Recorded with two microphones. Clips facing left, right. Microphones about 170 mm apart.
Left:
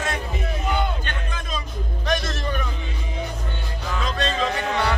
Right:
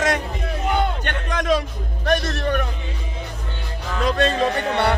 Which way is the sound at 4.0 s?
55° right (ahead or behind).